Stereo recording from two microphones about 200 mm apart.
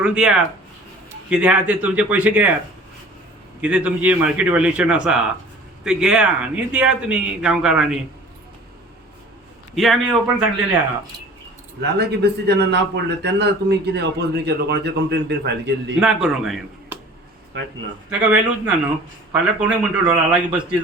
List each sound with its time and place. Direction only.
0.0 s a man's voice: 5° right (ahead or behind)
3.6 s a man's voice: 5° right (ahead or behind)
9.7 s a man's voice: centre (ahead or behind)
11.8 s a man's voice: 55° right (ahead or behind)
16.0 s a man's voice: 5° right (ahead or behind)
18.1 s a man's voice: 5° right (ahead or behind)